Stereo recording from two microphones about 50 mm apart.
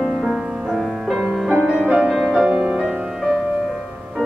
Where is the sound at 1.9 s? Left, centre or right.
Centre.